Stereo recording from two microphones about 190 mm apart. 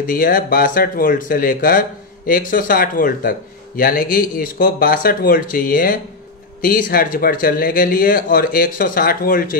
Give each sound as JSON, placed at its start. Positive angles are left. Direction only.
{"t": 0.0, "sound": "speech", "side_deg": 50}